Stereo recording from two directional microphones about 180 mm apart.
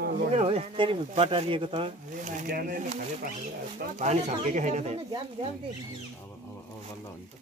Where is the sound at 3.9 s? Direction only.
40° right (ahead or behind).